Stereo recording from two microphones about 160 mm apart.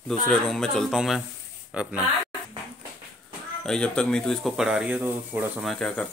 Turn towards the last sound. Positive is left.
turn(degrees=5)  # may be behind; listen again after turning